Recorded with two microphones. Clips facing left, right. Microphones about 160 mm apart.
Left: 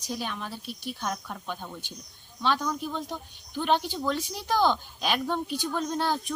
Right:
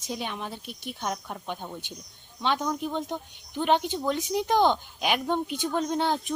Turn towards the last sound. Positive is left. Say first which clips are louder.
# right 2 dB
turn(degrees=-20)  # may be behind; listen again after turning